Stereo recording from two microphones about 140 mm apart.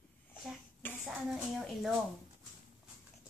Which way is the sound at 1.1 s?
Centre (ahead or behind).